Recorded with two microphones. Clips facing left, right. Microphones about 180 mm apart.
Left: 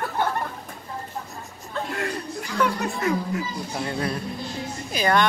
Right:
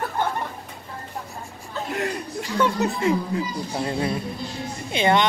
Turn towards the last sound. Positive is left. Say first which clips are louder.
# right 2 dB
turn(degrees=-25)  # may be behind; listen again after turning